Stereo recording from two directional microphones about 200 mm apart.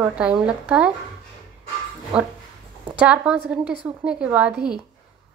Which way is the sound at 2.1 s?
5° right (ahead or behind).